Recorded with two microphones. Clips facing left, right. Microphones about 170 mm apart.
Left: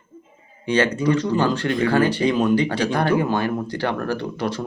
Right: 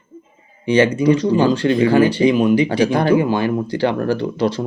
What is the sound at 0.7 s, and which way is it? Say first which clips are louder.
Speech: right 5 dB; 15° right (ahead or behind).